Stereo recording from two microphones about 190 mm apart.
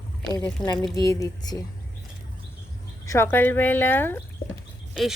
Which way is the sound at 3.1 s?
10° left (ahead or behind).